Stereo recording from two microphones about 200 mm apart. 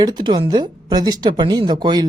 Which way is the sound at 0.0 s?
20° right (ahead or behind).